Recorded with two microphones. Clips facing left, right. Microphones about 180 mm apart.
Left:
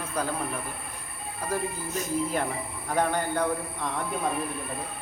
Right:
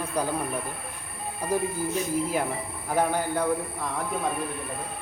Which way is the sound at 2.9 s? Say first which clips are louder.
Right 1 dB; 5° right (ahead or behind).